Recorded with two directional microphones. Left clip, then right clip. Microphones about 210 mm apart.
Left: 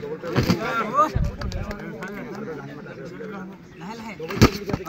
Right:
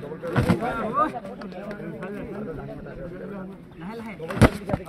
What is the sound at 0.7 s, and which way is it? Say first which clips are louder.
Run: left 3 dB; 45° left (ahead or behind).